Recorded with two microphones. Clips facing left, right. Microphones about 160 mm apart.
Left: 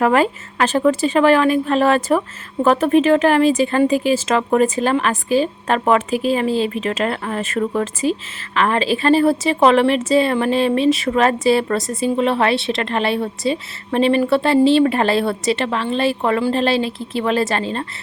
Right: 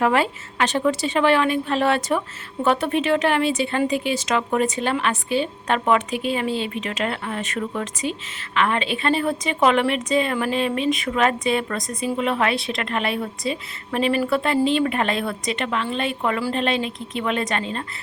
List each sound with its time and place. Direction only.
0.0 s a woman's voice: 45° left (ahead or behind)